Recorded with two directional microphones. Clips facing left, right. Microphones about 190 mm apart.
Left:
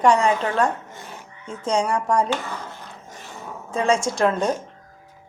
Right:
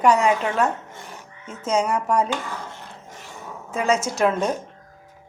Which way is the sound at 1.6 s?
30° left (ahead or behind).